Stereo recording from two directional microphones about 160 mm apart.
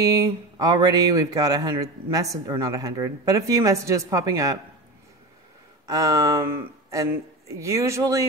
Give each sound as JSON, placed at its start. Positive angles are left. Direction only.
{"t": 0.0, "sound": "speech", "side_deg": -20}
{"t": 5.9, "sound": "speech", "side_deg": -20}